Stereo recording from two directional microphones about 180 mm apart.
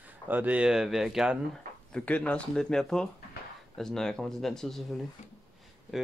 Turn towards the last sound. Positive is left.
turn(degrees=0)  # may be behind; listen again after turning